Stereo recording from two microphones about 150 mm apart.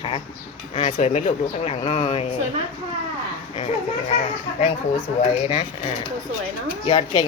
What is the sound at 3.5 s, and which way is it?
Speech, 45° left (ahead or behind).